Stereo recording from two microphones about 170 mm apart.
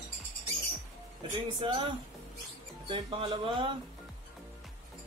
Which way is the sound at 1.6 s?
30° right (ahead or behind).